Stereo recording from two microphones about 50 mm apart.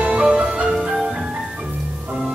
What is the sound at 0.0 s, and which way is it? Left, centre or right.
Music, centre.